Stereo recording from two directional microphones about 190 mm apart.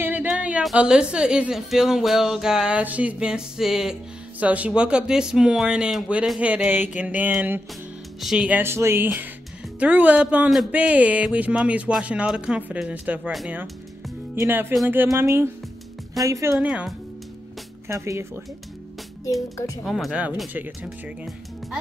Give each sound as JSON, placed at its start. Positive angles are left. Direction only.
{"t": 0.0, "sound": "a woman's voice", "side_deg": -10}
{"t": 16.5, "sound": "a woman's voice", "side_deg": -5}
{"t": 17.8, "sound": "speech", "side_deg": -15}
{"t": 19.5, "sound": "speech", "side_deg": 15}
{"t": 19.8, "sound": "a woman's voice", "side_deg": 0}